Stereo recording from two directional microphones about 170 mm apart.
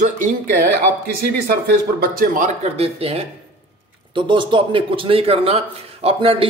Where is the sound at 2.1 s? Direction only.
45° right (ahead or behind).